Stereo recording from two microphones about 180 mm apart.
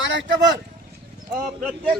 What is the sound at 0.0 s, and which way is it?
Speech, 90° right.